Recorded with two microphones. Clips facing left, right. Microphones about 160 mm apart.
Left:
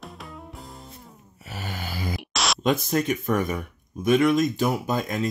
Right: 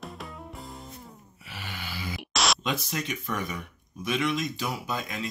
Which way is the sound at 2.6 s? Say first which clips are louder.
Left 9 dB; 50° left (ahead or behind).